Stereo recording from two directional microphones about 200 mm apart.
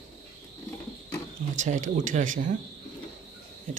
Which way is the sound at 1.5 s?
40° right (ahead or behind).